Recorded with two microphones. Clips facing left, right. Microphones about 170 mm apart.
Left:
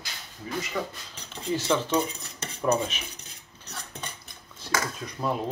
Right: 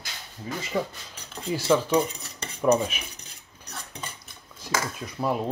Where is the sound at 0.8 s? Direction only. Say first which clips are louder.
Right 5 dB; 25° right (ahead or behind).